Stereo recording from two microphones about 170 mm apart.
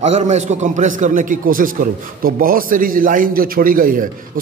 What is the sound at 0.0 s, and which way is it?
A man's voice, 40° right (ahead or behind).